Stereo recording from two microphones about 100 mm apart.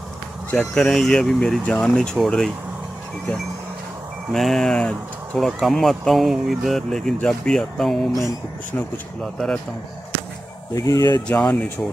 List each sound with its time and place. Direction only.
0.6 s speech: 5° left (ahead or behind)
4.3 s speech: 5° left (ahead or behind)
8.7 s speech: 15° left (ahead or behind)
9.2 s speech: 5° left (ahead or behind)
10.7 s speech: 35° left (ahead or behind)
11.2 s speech: 10° left (ahead or behind)